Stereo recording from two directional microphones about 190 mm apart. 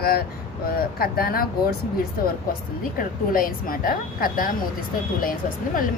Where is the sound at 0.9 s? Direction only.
55° left (ahead or behind).